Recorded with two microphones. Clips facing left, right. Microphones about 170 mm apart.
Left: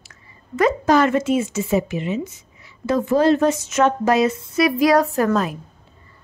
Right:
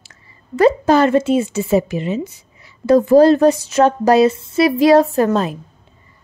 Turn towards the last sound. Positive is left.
turn(degrees=-25)  # may be behind; listen again after turning